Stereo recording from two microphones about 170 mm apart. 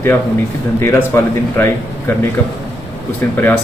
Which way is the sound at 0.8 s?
15° left (ahead or behind).